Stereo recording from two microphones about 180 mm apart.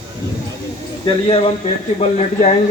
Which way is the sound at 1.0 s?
30° left (ahead or behind).